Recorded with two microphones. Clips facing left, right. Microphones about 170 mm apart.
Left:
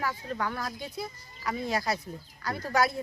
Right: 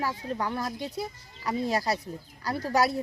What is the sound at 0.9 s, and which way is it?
Speech, 35° right (ahead or behind).